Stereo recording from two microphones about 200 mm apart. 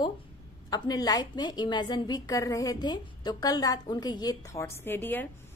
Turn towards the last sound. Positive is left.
turn(degrees=10)  # may be behind; listen again after turning